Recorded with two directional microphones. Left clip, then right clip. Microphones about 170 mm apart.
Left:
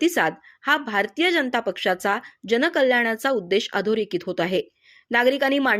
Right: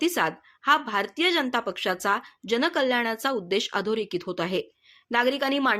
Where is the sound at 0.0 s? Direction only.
20° left (ahead or behind).